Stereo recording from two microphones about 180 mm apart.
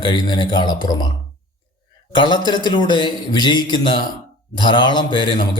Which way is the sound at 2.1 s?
25° left (ahead or behind).